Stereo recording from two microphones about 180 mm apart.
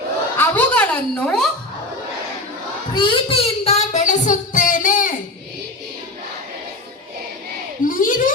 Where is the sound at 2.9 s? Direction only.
25° left (ahead or behind); by 5.1 s 45° left (ahead or behind).